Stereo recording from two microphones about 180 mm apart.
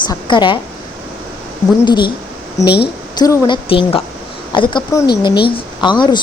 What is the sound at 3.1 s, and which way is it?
A woman's voice, 20° left (ahead or behind).